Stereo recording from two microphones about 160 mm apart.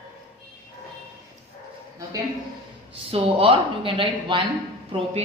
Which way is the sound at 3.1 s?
35° right (ahead or behind).